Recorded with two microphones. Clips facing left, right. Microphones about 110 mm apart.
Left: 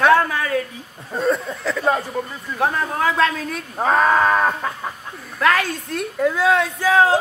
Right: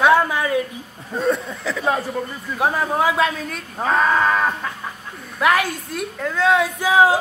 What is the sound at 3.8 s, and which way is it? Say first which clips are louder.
Speech: left 2 dB; 10° left (ahead or behind).